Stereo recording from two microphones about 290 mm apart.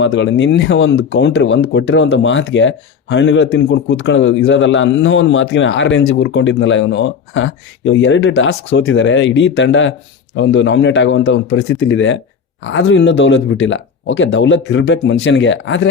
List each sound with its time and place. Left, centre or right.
0.0 s speech: left